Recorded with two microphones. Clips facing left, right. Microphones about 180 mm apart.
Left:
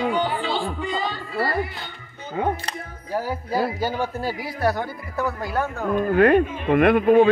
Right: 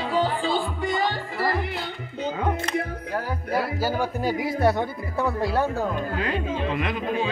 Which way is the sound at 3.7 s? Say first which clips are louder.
Even; 10° right (ahead or behind).